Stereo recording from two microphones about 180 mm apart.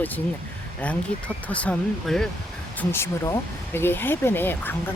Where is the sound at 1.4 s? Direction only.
5° left (ahead or behind).